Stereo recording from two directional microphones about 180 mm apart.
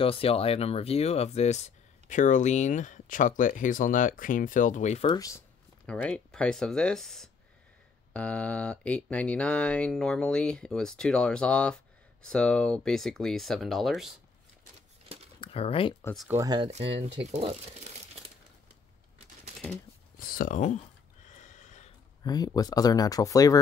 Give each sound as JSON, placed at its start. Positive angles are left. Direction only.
{"t": 0.0, "sound": "speech", "side_deg": 30}
{"t": 5.1, "sound": "speech", "side_deg": 20}
{"t": 5.9, "sound": "speech", "side_deg": 5}
{"t": 15.4, "sound": "speech", "side_deg": 35}
{"t": 16.3, "sound": "speech", "side_deg": -20}
{"t": 16.7, "sound": "speech", "side_deg": -35}
{"t": 20.2, "sound": "a sound", "side_deg": 55}
{"t": 22.2, "sound": "speech", "side_deg": 20}